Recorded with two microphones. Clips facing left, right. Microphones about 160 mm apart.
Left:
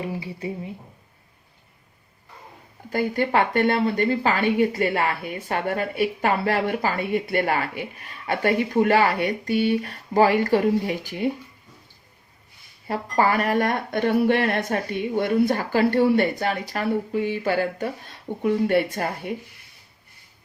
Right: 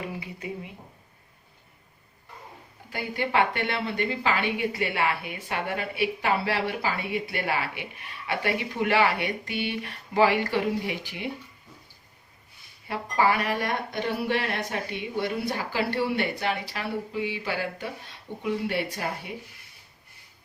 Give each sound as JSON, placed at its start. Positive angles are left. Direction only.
{"t": 0.0, "sound": "a sound", "side_deg": 30}
{"t": 2.9, "sound": "a woman's voice", "side_deg": 45}
{"t": 12.9, "sound": "a woman's voice", "side_deg": 45}